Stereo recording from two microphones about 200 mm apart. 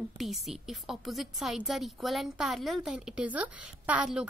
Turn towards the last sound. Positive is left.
turn(degrees=-5)  # may be behind; listen again after turning